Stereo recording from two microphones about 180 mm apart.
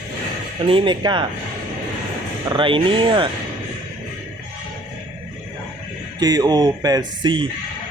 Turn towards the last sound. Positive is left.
turn(degrees=-25)  # may be behind; listen again after turning